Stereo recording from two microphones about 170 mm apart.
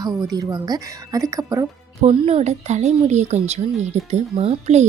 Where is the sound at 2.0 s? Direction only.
35° right (ahead or behind).